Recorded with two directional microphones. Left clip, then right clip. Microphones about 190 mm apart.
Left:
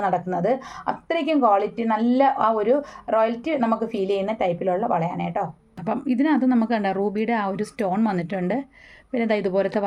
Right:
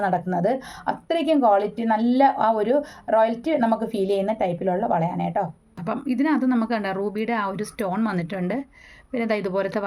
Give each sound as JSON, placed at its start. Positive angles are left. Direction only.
{"t": 0.0, "sound": "a woman's voice", "side_deg": -20}
{"t": 5.8, "sound": "speech", "side_deg": 5}